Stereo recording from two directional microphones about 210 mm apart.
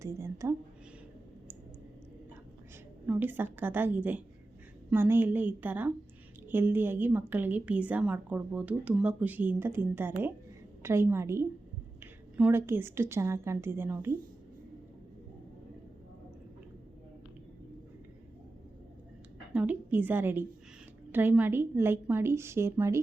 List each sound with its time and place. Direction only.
0.0 s a woman's voice: 15° right (ahead or behind)
3.1 s a woman's voice: 10° right (ahead or behind)
19.5 s a woman's voice: 10° right (ahead or behind)